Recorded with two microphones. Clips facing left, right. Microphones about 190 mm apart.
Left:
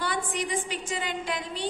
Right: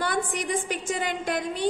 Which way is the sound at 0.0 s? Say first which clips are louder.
Right 3 dB; 50° right (ahead or behind).